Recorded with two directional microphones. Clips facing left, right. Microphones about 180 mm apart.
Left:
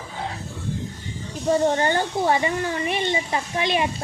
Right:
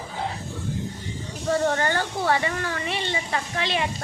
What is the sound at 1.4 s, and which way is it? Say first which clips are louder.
Speech: left 3 dB; 20° left (ahead or behind).